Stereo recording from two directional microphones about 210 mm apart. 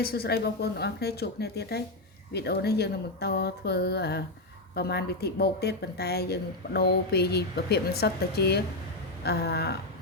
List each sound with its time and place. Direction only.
0.0 s a woman's voice: 45° left (ahead or behind)